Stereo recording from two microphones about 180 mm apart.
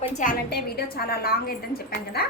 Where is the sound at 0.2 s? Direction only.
55° left (ahead or behind).